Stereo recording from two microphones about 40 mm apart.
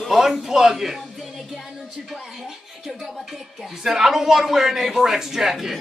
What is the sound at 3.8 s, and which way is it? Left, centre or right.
A man's voice, centre.